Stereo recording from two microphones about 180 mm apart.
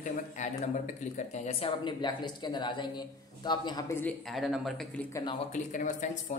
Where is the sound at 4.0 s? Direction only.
5° left (ahead or behind).